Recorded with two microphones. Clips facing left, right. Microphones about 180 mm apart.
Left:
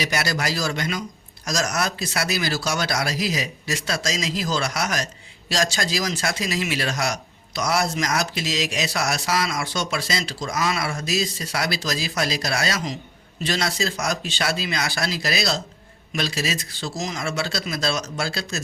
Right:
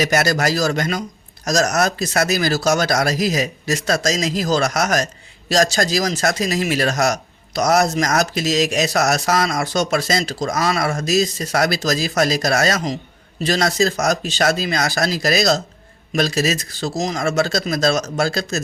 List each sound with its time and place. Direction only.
0.0 s speech: 45° right (ahead or behind)